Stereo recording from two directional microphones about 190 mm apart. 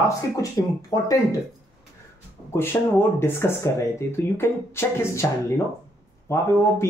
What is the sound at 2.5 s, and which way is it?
A man's voice, 10° left (ahead or behind).